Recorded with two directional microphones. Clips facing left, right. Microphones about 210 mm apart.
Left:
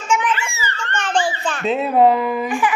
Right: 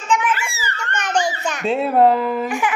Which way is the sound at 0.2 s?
10° right (ahead or behind).